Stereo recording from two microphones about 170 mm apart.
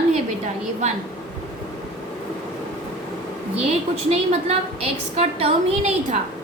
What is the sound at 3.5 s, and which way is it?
A woman's voice, 40° right (ahead or behind).